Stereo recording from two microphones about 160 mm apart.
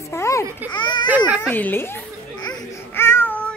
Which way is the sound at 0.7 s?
30° left (ahead or behind).